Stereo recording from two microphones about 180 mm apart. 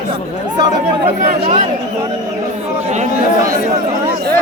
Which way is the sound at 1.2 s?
45° right (ahead or behind).